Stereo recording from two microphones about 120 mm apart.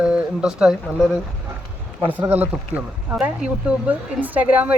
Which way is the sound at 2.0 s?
15° right (ahead or behind).